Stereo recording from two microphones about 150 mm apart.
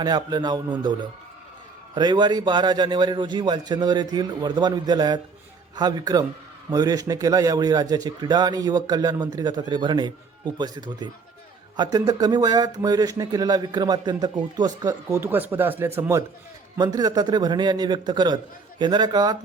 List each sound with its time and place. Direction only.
0.0 s a man's voice: 30° right (ahead or behind)
2.0 s a man's voice: 30° right (ahead or behind)